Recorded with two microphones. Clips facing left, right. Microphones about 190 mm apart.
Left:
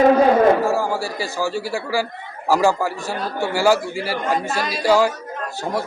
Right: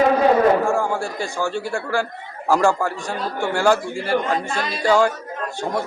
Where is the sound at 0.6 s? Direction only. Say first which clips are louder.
Even; 5° left (ahead or behind).